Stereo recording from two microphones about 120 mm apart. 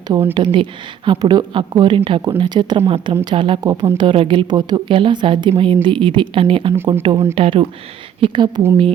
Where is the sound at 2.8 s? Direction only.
50° right (ahead or behind).